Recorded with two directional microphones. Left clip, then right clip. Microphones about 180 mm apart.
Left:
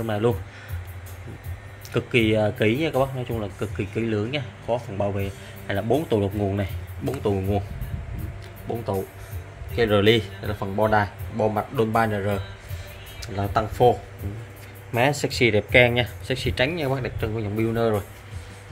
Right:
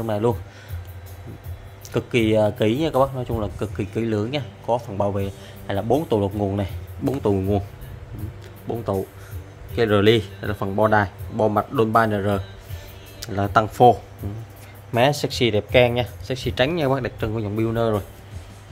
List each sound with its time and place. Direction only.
0.0 s speech: 20° right (ahead or behind)
1.9 s speech: 20° right (ahead or behind)
7.1 s speech: 45° right (ahead or behind)
8.6 s speech: 40° right (ahead or behind)
15.0 s speech: 15° right (ahead or behind)
16.4 s speech: 25° right (ahead or behind)
16.7 s speech: 45° right (ahead or behind)